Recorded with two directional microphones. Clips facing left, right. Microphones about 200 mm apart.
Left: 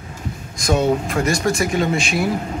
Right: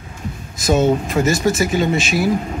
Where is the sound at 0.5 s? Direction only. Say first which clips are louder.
Right 2 dB; 5° right (ahead or behind).